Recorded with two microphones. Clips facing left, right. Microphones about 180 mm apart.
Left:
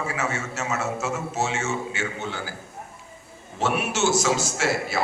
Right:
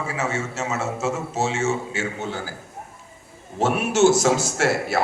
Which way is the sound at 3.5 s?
45° right (ahead or behind).